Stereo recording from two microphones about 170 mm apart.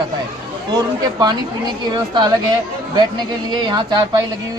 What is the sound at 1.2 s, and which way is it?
Speech, 25° right (ahead or behind).